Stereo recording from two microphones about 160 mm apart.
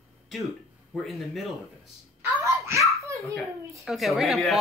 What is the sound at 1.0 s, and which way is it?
Speech, centre (ahead or behind).